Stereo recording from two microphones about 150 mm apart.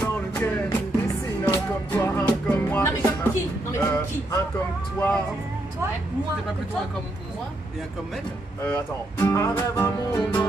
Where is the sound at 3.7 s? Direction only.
15° left (ahead or behind).